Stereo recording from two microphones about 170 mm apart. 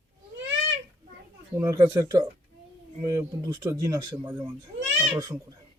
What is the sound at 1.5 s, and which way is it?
Speech, 20° right (ahead or behind).